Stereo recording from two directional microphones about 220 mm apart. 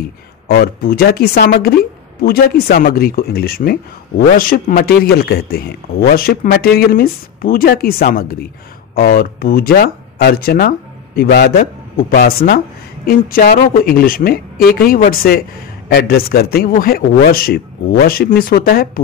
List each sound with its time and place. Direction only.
0.5 s speech: 45° left (ahead or behind)